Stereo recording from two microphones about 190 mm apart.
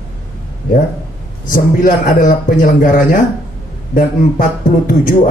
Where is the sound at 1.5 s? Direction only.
45° left (ahead or behind).